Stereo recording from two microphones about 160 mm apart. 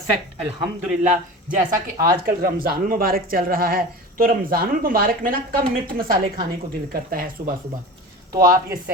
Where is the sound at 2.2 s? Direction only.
65° right (ahead or behind).